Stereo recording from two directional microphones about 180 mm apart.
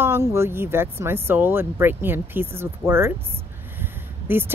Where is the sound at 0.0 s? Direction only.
15° right (ahead or behind).